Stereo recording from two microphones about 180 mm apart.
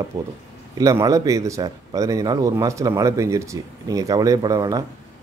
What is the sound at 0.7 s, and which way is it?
Speech, 20° right (ahead or behind).